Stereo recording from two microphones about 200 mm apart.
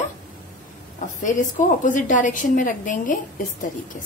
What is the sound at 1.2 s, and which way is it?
A woman's voice, 40° left (ahead or behind).